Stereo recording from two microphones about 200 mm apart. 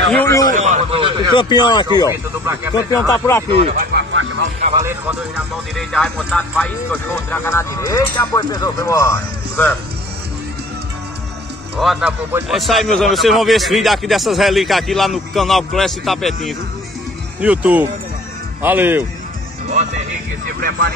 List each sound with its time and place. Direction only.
0.1 s speech: 10° left (ahead or behind)
0.5 s a sound: 35° right (ahead or behind)
1.3 s speech: 25° left (ahead or behind)
3.4 s speech: 30° right (ahead or behind)
4.1 s music: 75° right (ahead or behind)
4.7 s speech: 10° right (ahead or behind)
5.8 s speech: 5° left (ahead or behind)
11.7 s a man's voice: 5° right (ahead or behind)
12.5 s a man's voice: centre (ahead or behind)
17.4 s speech: 5° right (ahead or behind)